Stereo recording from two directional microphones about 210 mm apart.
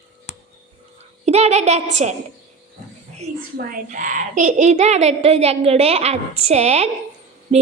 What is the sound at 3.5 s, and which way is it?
A woman's voice, 45° right (ahead or behind).